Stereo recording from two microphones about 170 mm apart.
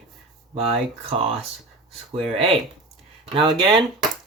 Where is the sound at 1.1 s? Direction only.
35° right (ahead or behind).